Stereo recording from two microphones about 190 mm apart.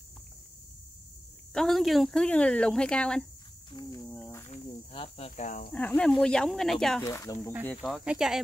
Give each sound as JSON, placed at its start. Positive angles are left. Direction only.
{"t": 1.5, "sound": "speech", "side_deg": 0}
{"t": 3.8, "sound": "cricket", "side_deg": 20}
{"t": 5.7, "sound": "speech", "side_deg": 5}
{"t": 7.0, "sound": "speech", "side_deg": 15}
{"t": 7.6, "sound": "speech", "side_deg": 5}